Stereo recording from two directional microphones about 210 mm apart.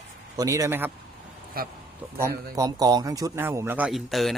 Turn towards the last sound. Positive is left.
turn(degrees=0)  # may be behind; listen again after turning